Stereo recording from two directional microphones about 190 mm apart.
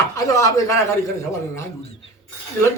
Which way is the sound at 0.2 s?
15° left (ahead or behind).